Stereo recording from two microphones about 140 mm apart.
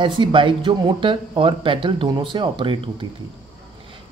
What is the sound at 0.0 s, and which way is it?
Speech, 35° right (ahead or behind).